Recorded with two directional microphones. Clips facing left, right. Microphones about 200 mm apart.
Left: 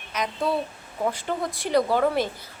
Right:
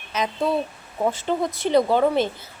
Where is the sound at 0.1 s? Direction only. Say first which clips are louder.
Right 3 dB; 25° right (ahead or behind).